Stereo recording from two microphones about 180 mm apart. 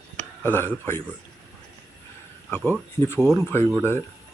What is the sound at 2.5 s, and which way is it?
Speech, 10° left (ahead or behind).